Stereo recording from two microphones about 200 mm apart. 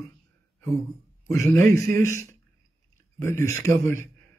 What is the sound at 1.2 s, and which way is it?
A man's voice, 15° left (ahead or behind).